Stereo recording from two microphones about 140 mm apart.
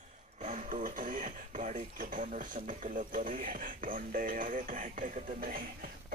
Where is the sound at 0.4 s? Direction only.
60° right (ahead or behind).